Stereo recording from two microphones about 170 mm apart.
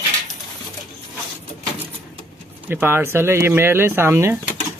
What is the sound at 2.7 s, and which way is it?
Speech, 10° right (ahead or behind).